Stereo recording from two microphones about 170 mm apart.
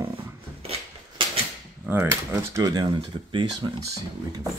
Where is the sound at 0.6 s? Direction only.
35° right (ahead or behind).